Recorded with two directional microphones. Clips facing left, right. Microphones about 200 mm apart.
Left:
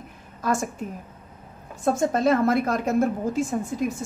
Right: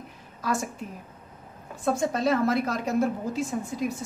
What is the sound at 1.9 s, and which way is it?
A woman's voice, 45° left (ahead or behind).